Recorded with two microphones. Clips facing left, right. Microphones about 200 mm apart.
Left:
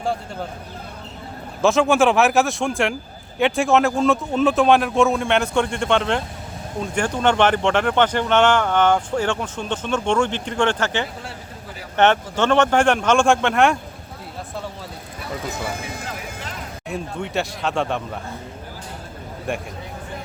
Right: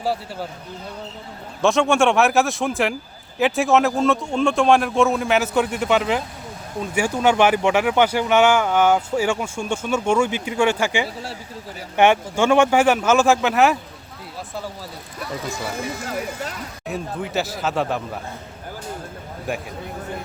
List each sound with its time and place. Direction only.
1.6 s speech: centre (ahead or behind)
16.0 s speech: 45° right (ahead or behind)
16.9 s speech: centre (ahead or behind)
19.5 s speech: centre (ahead or behind)